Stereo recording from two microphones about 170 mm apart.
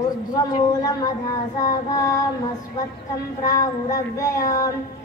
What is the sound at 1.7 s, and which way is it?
Child singing, 20° left (ahead or behind).